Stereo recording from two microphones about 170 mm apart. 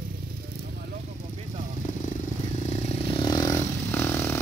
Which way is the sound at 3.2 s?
25° left (ahead or behind).